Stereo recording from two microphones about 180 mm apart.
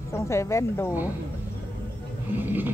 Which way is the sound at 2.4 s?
10° right (ahead or behind).